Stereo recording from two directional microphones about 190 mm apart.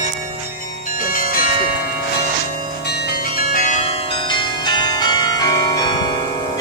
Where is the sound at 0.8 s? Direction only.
45° left (ahead or behind).